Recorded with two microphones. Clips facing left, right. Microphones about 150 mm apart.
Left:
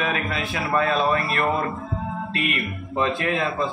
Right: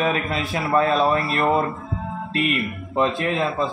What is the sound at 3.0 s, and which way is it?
Speech, 30° right (ahead or behind).